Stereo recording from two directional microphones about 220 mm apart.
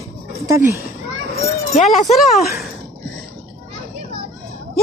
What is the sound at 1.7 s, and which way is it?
Speech, 35° left (ahead or behind).